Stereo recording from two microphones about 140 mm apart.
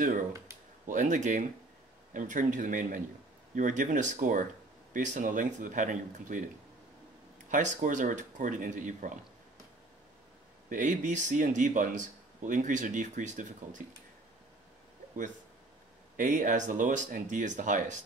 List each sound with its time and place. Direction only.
0.8 s speech: 60° right (ahead or behind)
7.4 s speech: 70° right (ahead or behind)
10.7 s speech: 60° right (ahead or behind)
16.2 s speech: 70° right (ahead or behind)